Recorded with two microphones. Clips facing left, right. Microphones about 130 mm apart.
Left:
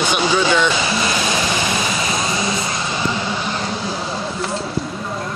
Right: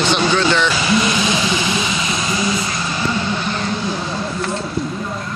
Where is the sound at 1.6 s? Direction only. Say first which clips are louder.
Even; 45° left (ahead or behind).